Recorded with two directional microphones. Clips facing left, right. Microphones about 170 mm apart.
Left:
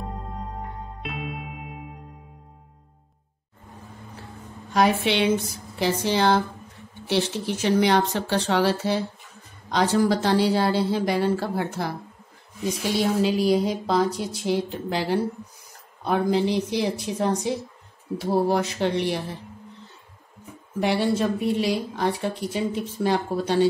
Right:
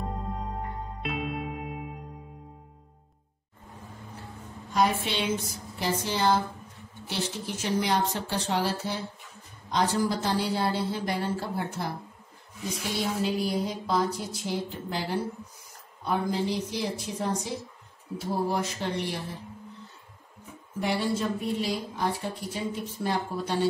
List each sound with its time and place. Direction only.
0.0 s music: centre (ahead or behind)
4.7 s a woman's voice: 80° left
13.2 s a woman's voice: 90° left
20.8 s a woman's voice: 70° left (ahead or behind); by 23.7 s 90° left